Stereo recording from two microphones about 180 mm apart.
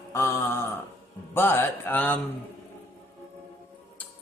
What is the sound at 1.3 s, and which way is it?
Speech, 15° left (ahead or behind).